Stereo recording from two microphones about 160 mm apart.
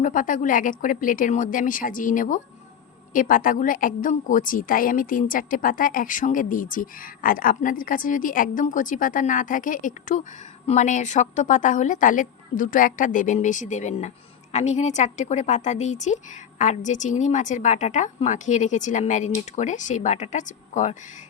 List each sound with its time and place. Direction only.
0.0 s a woman's voice: 55° left (ahead or behind)